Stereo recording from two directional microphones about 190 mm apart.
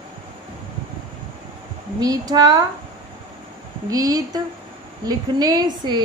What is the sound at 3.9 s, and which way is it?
Speech, 20° right (ahead or behind).